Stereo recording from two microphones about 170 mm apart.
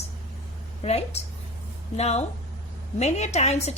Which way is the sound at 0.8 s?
35° left (ahead or behind).